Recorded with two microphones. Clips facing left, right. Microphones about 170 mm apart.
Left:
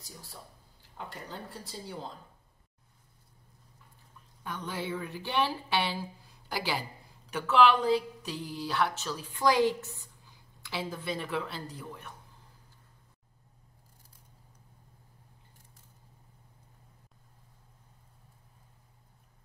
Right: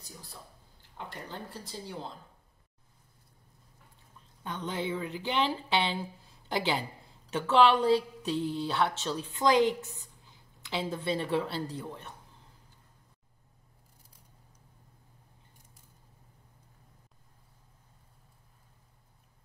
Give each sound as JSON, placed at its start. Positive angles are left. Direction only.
{"t": 0.9, "sound": "speech", "side_deg": 0}
{"t": 4.4, "sound": "speech", "side_deg": -25}